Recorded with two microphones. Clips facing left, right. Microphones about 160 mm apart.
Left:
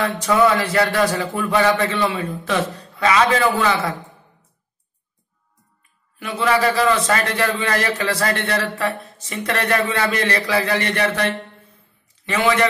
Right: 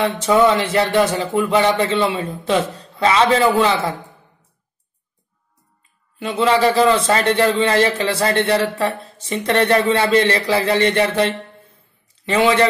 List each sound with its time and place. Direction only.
0.0 s a man's voice: 25° right (ahead or behind)
6.1 s a man's voice: 25° right (ahead or behind)